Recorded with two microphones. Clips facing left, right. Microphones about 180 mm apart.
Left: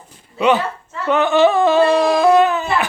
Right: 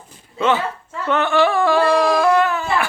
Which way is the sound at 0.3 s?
15° left (ahead or behind).